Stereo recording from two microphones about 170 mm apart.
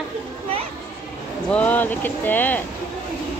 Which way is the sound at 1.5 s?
10° left (ahead or behind).